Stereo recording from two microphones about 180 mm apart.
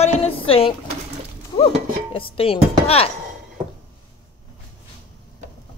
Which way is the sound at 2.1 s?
30° left (ahead or behind).